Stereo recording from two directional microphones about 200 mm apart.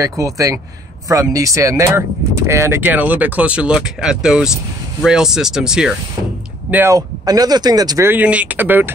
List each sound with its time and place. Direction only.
0.0 s speech: 15° right (ahead or behind)